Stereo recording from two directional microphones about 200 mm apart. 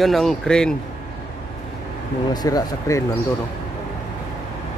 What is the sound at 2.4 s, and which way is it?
Speech, 20° left (ahead or behind).